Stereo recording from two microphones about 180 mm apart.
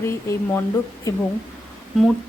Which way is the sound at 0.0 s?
15° left (ahead or behind).